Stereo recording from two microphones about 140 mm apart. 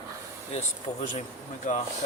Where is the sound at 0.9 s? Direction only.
25° left (ahead or behind).